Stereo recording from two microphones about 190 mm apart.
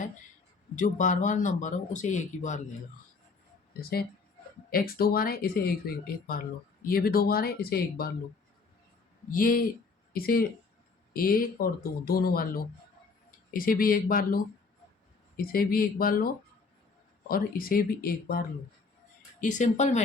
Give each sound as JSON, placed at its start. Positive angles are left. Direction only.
{"t": 0.8, "sound": "speech", "side_deg": 40}
{"t": 3.8, "sound": "speech", "side_deg": 55}
{"t": 6.8, "sound": "speech", "side_deg": 50}
{"t": 9.3, "sound": "speech", "side_deg": 45}